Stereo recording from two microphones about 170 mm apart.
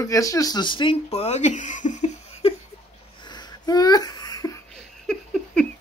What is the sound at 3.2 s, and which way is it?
Wheeze, 25° left (ahead or behind).